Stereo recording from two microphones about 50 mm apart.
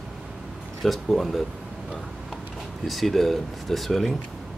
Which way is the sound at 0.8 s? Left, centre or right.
Centre.